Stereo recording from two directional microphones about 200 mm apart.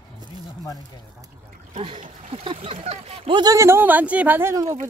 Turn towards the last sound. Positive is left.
turn(degrees=-15)  # may be behind; listen again after turning